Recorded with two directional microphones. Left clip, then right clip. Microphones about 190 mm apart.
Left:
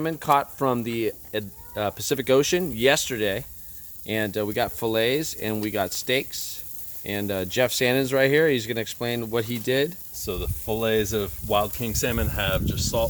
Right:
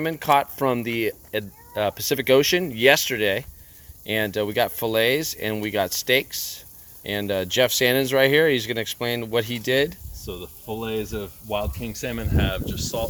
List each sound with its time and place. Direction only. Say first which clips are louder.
0.0 s speech: right 2 dB; 5° left (ahead or behind)
10.2 s speech: left 4 dB; 55° left (ahead or behind); by 13.1 s 25° left (ahead or behind)